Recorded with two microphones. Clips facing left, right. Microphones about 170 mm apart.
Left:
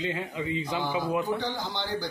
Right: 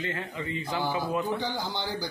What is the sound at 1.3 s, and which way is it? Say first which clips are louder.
Speech: even; centre (ahead or behind).